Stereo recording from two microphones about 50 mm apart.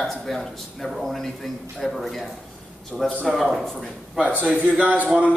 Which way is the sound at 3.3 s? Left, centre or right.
Centre.